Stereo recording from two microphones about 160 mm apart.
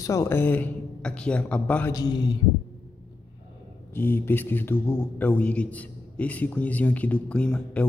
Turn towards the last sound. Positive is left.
turn(degrees=5)  # may be behind; listen again after turning